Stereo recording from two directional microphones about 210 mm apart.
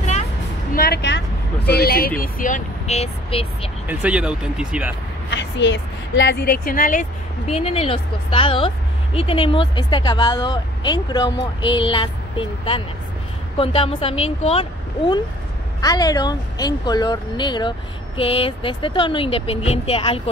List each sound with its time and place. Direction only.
0.7 s speech: 50° left (ahead or behind); by 3.7 s 25° left (ahead or behind)
3.8 s speech: 5° right (ahead or behind)
5.3 s speech: 60° left (ahead or behind); by 20.2 s 30° left (ahead or behind)